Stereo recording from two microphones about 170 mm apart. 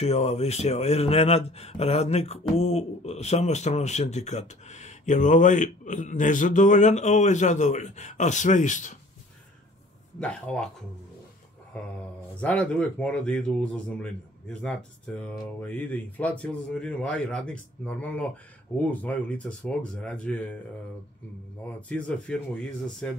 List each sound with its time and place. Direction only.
0.0 s a man's voice: 35° left (ahead or behind)
10.2 s speech: 5° left (ahead or behind)
12.4 s speech: 5° left (ahead or behind)
21.6 s speech: 5° left (ahead or behind)